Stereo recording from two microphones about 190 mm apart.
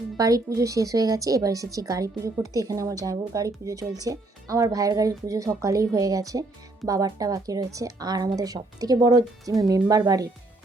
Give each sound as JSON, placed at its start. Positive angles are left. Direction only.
{"t": 0.2, "sound": "a woman's voice", "side_deg": -20}